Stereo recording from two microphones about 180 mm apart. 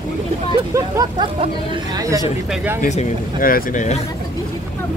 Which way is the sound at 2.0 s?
15° right (ahead or behind).